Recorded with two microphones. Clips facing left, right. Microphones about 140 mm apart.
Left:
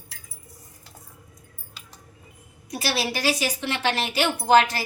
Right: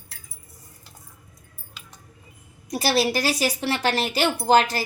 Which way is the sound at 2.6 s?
40° right (ahead or behind).